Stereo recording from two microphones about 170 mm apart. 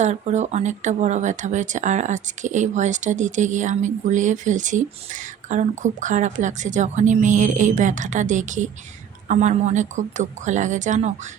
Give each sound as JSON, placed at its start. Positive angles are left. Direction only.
{"t": 0.0, "sound": "speech", "side_deg": -40}